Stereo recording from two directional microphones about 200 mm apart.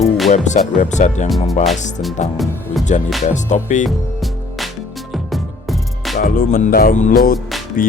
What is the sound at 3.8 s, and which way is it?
Music, centre (ahead or behind).